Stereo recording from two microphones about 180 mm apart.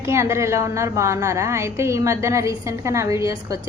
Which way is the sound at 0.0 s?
15° right (ahead or behind).